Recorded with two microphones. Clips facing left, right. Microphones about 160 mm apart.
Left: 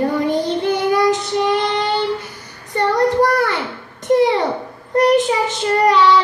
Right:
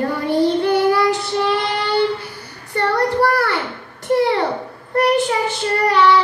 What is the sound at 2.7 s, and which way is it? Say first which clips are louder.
Child singing: left 2 dB; 20° left (ahead or behind).